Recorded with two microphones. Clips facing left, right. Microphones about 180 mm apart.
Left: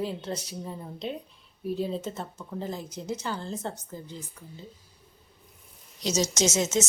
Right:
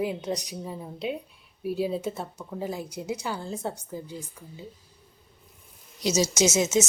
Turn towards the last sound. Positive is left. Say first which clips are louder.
# right 3 dB
turn(degrees=-10)  # may be behind; listen again after turning